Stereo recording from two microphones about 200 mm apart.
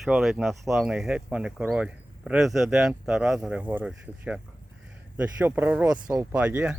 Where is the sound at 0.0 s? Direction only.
Centre (ahead or behind).